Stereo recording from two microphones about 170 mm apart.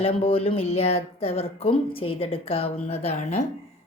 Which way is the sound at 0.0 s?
35° left (ahead or behind).